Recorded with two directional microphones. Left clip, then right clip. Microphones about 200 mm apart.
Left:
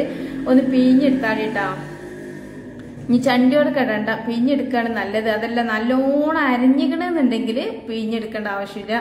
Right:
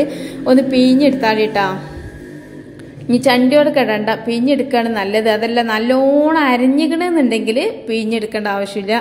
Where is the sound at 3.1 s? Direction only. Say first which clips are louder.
Right 5 dB; 25° right (ahead or behind).